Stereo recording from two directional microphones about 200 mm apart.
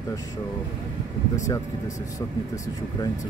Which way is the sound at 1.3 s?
15° left (ahead or behind).